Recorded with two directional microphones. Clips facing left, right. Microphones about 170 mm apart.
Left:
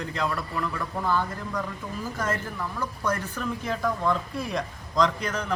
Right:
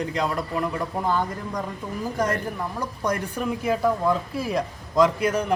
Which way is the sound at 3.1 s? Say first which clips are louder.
Right 4 dB; 15° right (ahead or behind).